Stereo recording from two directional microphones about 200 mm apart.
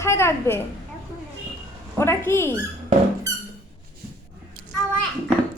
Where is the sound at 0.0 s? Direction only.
15° left (ahead or behind).